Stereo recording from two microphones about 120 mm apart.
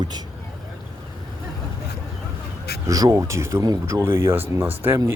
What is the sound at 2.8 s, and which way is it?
Speech, 30° right (ahead or behind).